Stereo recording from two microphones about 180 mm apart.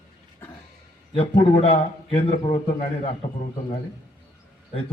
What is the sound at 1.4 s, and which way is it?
A man's voice, 30° left (ahead or behind).